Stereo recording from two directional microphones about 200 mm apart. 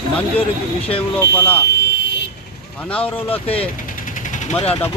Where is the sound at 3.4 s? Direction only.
30° left (ahead or behind).